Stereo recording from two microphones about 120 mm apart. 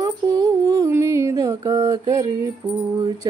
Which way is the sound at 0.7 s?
25° right (ahead or behind).